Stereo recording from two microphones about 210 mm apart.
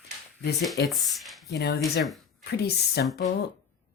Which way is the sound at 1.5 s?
50° left (ahead or behind).